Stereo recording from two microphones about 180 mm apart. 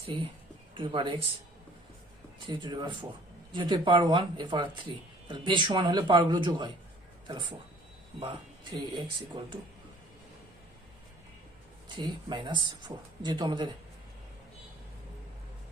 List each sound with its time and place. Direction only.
0.1 s speech: 25° right (ahead or behind)
2.5 s speech: 25° right (ahead or behind)
11.9 s speech: 25° right (ahead or behind)